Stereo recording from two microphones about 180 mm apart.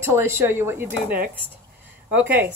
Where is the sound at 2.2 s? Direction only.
10° right (ahead or behind).